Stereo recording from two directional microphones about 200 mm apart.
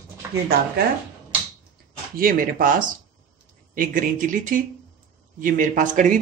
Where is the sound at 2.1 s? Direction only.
45° right (ahead or behind).